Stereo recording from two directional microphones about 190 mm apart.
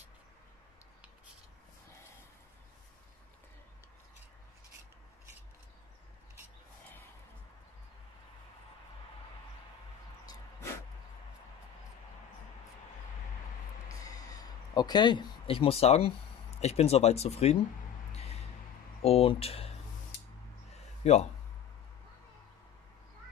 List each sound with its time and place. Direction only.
13.8 s a sound: 20° left (ahead or behind); by 17.6 s 35° left (ahead or behind)
18.9 s speech: 30° left (ahead or behind)
21.0 s speech: 35° left (ahead or behind)